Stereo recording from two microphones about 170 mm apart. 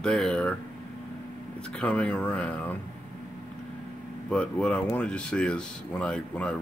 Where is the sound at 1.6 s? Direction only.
5° left (ahead or behind).